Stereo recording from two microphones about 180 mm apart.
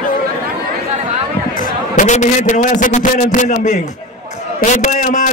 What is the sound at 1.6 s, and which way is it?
A man's voice, 45° left (ahead or behind).